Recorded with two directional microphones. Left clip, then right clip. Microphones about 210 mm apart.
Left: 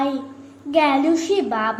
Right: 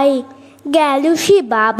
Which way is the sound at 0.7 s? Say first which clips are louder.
Right 4 dB; 55° right (ahead or behind).